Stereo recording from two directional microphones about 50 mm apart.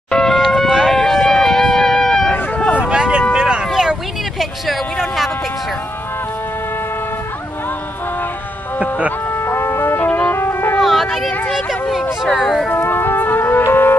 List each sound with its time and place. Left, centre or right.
0.1 s a sound: centre
0.4 s vehicle: centre
0.8 s music: centre
2.3 s vehicle: left
2.8 s vehicle: centre
9.5 s music: left
9.9 s music: left
10.3 s music: left
10.8 s a sound: centre
12.7 s music: left